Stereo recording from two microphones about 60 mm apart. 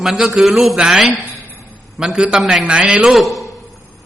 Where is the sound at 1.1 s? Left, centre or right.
Right.